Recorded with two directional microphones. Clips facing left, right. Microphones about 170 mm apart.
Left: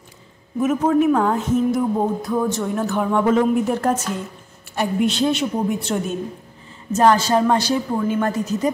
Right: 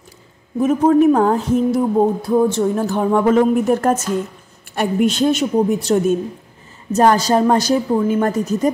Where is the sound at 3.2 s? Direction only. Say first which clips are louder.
Right 4 dB; 50° right (ahead or behind).